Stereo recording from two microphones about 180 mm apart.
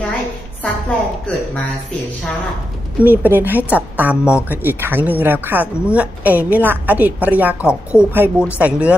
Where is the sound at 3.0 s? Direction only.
10° right (ahead or behind).